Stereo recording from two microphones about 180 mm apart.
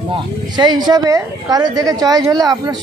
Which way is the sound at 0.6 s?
25° right (ahead or behind).